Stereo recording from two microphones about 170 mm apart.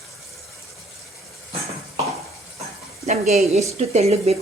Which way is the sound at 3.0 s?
40° right (ahead or behind).